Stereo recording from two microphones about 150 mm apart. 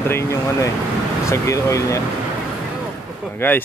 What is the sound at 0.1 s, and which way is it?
Speech, 20° left (ahead or behind).